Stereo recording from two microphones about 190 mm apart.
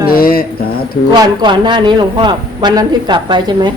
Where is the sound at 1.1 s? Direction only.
25° right (ahead or behind).